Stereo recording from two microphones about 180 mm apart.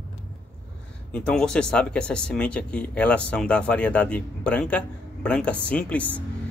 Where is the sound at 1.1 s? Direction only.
5° left (ahead or behind).